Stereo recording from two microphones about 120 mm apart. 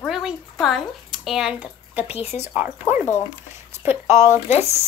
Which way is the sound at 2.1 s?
60° left (ahead or behind).